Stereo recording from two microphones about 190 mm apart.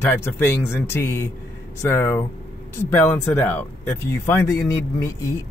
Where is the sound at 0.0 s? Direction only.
10° left (ahead or behind).